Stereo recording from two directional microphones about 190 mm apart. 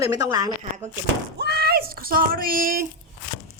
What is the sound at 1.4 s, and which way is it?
Speech, 55° right (ahead or behind).